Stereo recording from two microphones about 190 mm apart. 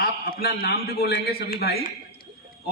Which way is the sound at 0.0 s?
55° left (ahead or behind).